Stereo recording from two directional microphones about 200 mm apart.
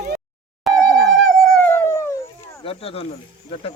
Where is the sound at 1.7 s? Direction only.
15° left (ahead or behind).